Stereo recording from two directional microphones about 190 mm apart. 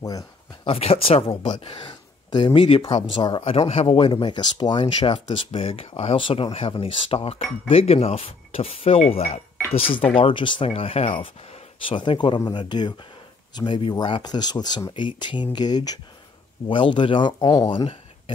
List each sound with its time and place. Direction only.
0.7 s speech: 30° left (ahead or behind)